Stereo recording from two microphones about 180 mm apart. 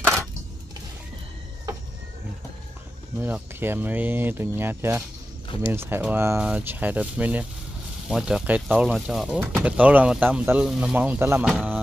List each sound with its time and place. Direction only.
3.2 s speech: 10° right (ahead or behind)